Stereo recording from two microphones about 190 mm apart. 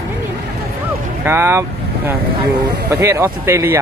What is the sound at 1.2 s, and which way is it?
Speech, 10° right (ahead or behind).